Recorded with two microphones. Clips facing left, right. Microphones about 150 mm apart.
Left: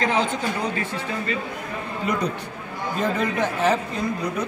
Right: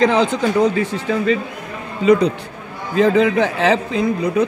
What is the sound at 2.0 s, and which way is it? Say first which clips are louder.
Speech: right 12 dB; 70° right (ahead or behind).